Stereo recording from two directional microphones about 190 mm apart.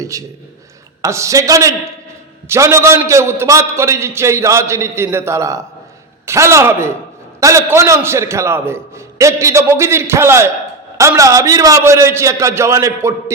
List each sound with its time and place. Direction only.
0.1 s a man's voice: 15° right (ahead or behind)